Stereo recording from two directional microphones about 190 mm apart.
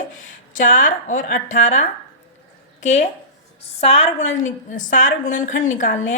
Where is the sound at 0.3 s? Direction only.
45° left (ahead or behind).